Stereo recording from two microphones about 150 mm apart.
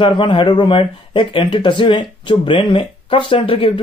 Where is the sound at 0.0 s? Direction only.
35° left (ahead or behind).